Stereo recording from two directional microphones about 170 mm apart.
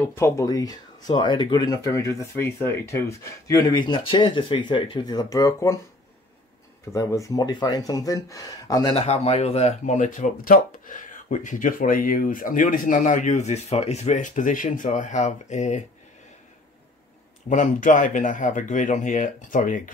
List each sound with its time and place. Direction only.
0.0 s speech: 15° left (ahead or behind)
6.9 s speech: 20° left (ahead or behind)
8.9 s speech: 40° left (ahead or behind)
17.5 s speech: 50° left (ahead or behind)